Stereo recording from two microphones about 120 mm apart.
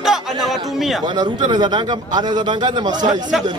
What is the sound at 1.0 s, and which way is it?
A man's voice, 40° right (ahead or behind).